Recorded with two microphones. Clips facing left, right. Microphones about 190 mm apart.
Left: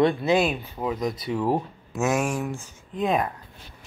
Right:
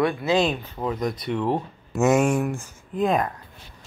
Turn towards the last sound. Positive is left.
turn(degrees=0)  # may be behind; listen again after turning